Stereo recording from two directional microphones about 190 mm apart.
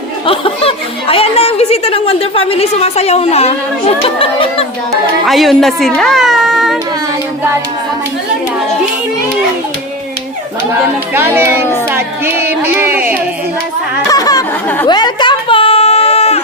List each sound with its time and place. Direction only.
0.3 s speech: 30° left (ahead or behind)
5.2 s a child's voice: centre (ahead or behind)
11.3 s a child's voice: 10° right (ahead or behind)
11.9 s child singing: 10° right (ahead or behind)
12.6 s carnatic music: 10° right (ahead or behind)
14.1 s speech: 20° left (ahead or behind)
14.8 s a sound: 25° left (ahead or behind)